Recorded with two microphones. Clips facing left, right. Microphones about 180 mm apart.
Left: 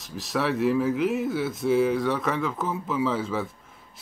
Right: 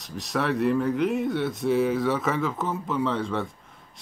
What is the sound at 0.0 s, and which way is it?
Speech, centre (ahead or behind).